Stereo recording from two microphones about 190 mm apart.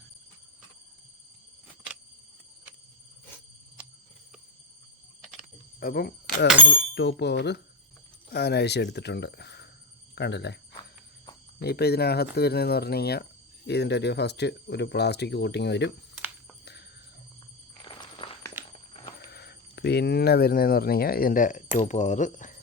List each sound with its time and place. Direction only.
1.6 s a sound: 5° right (ahead or behind)
5.2 s a sound: 5° right (ahead or behind)
5.8 s speech: 55° left (ahead or behind)
11.6 s speech: 60° left (ahead or behind)
17.8 s walk: 25° left (ahead or behind)
18.6 s walk: 10° right (ahead or behind)
19.3 s speech: 55° left (ahead or behind); by 22.5 s 40° left (ahead or behind)